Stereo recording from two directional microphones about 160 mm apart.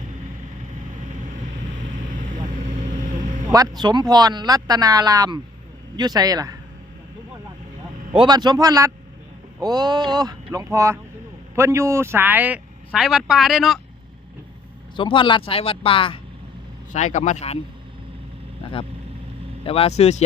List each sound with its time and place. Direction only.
1.1 s vehicle: 50° right (ahead or behind)
3.5 s speech: 25° right (ahead or behind)
8.1 s speech: 30° right (ahead or behind); by 13.8 s centre (ahead or behind)
14.9 s speech: 30° left (ahead or behind)
16.9 s speech: 50° left (ahead or behind)
19.6 s speech: 40° left (ahead or behind)